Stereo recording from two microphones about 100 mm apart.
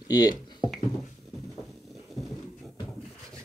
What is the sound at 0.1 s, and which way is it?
Speech, 40° left (ahead or behind).